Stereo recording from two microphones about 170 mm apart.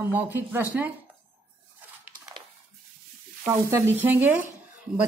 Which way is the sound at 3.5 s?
15° right (ahead or behind).